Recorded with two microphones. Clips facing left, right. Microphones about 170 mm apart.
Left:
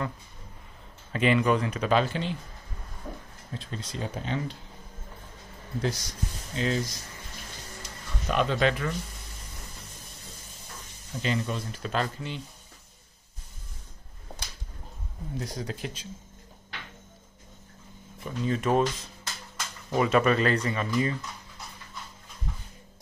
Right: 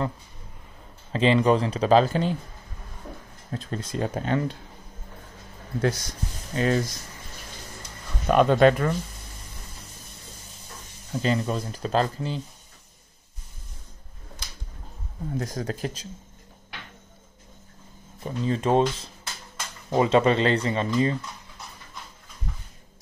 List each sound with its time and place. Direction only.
1.1 s speech: 30° right (ahead or behind)
3.5 s speech: 50° right (ahead or behind)
5.8 s speech: 55° right (ahead or behind)
8.3 s speech: 50° right (ahead or behind)
11.2 s speech: 40° right (ahead or behind)
15.3 s speech: 50° right (ahead or behind)
18.2 s speech: 30° right (ahead or behind)